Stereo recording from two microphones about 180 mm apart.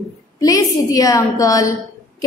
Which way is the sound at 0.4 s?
20° left (ahead or behind).